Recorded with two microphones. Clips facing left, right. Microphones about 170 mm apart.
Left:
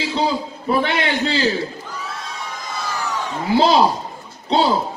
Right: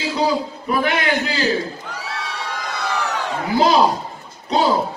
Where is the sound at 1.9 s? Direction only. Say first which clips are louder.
Right 1 dB; 70° right (ahead or behind).